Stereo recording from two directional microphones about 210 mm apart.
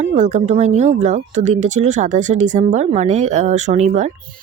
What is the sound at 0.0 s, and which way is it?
Speech, 35° right (ahead or behind).